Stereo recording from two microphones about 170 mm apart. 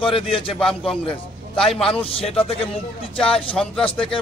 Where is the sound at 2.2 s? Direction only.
35° left (ahead or behind).